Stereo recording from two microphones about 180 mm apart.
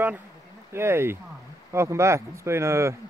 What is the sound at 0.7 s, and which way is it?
Speech, 15° right (ahead or behind).